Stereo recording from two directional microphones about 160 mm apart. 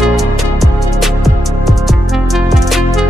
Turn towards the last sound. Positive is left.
turn(degrees=0)  # may be behind; listen again after turning